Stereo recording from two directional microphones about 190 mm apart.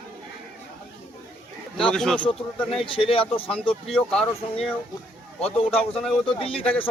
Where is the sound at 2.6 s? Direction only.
30° left (ahead or behind).